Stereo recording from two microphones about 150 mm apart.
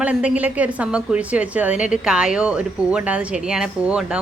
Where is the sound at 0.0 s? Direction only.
10° right (ahead or behind).